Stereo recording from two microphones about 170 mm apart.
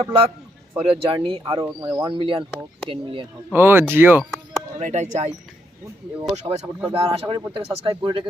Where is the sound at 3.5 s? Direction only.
15° right (ahead or behind).